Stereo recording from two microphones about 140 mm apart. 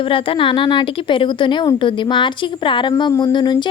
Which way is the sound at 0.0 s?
40° left (ahead or behind).